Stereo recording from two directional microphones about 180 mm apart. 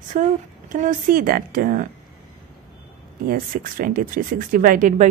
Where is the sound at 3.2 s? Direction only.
50° right (ahead or behind).